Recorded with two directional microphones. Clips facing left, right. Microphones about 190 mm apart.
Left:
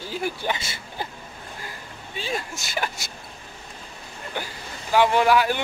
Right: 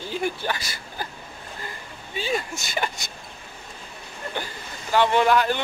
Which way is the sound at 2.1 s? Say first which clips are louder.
Right 3 dB; centre (ahead or behind).